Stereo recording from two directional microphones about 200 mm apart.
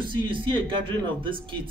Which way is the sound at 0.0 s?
25° right (ahead or behind).